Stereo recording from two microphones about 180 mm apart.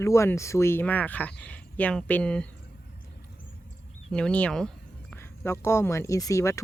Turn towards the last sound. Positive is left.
turn(degrees=15)  # may be behind; listen again after turning